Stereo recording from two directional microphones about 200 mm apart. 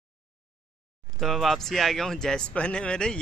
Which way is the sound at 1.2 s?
Centre (ahead or behind).